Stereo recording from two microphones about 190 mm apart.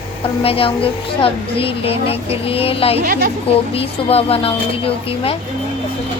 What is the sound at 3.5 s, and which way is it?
Speech, 30° left (ahead or behind).